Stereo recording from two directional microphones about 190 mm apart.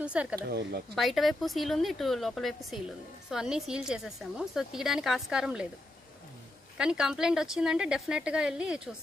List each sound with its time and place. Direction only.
0.0 s speech: 5° right (ahead or behind)
0.4 s a woman's voice: 55° right (ahead or behind)
0.9 s a woman's voice: centre (ahead or behind)
6.8 s a woman's voice: 5° right (ahead or behind)